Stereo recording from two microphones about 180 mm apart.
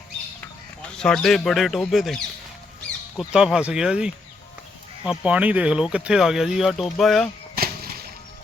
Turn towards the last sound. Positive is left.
turn(degrees=-55)  # may be behind; listen again after turning